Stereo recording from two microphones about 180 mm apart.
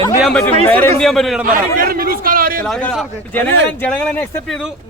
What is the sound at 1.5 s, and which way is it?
A man's voice, 50° right (ahead or behind).